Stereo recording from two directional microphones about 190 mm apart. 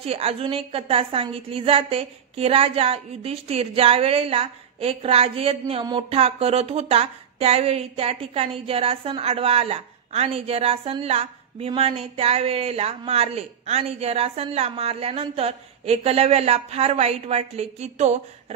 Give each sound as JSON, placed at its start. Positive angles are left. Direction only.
{"t": 0.0, "sound": "a woman's voice", "side_deg": -30}